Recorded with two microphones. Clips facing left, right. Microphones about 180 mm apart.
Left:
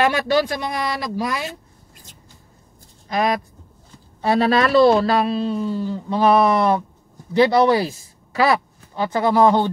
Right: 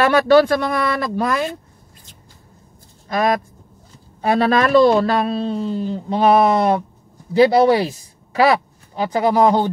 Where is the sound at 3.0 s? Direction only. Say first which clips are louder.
Right 2 dB; 45° right (ahead or behind).